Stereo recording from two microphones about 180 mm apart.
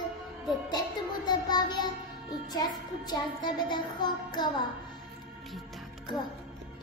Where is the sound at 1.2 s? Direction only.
25° left (ahead or behind).